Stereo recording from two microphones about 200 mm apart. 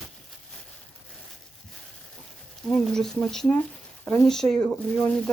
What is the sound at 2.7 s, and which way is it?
Speech, centre (ahead or behind).